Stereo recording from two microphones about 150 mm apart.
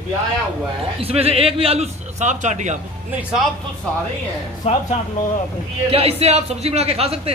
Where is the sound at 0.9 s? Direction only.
40° right (ahead or behind).